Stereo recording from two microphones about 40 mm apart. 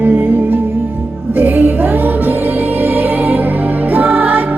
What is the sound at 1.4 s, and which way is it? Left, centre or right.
Music, right.